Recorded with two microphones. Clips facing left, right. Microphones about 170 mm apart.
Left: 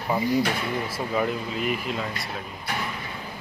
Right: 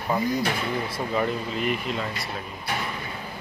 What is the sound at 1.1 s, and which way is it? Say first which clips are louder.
Speech: even; 5° left (ahead or behind).